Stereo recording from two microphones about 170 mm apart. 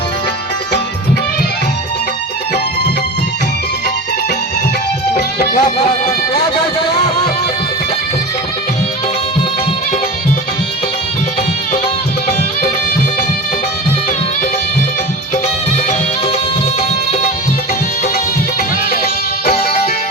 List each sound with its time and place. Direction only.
5.5 s speech: 40° left (ahead or behind)
18.9 s music: 65° left (ahead or behind)